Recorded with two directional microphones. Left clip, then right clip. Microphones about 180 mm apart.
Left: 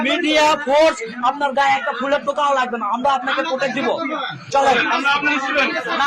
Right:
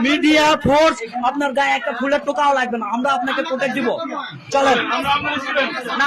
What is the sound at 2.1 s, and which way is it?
A man's voice, 45° right (ahead or behind).